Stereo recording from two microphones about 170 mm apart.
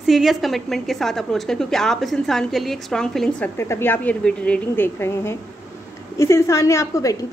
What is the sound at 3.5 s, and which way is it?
A woman's voice, 15° left (ahead or behind).